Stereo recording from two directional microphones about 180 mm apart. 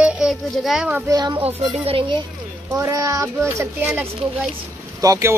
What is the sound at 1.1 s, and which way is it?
Speech, 20° right (ahead or behind).